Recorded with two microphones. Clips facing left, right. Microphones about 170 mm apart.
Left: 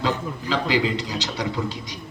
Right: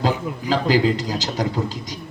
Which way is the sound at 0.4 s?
40° right (ahead or behind).